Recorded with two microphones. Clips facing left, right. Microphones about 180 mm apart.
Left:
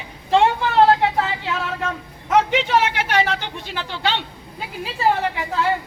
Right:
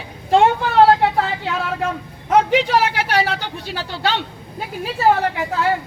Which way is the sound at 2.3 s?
35° right (ahead or behind).